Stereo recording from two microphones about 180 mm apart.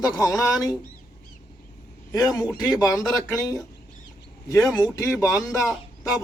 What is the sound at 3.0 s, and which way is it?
Speech, centre (ahead or behind).